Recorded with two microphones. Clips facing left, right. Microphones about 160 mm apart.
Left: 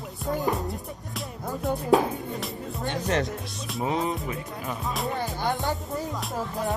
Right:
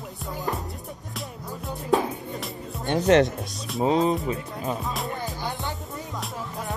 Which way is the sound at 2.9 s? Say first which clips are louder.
Right 9 dB; 80° right.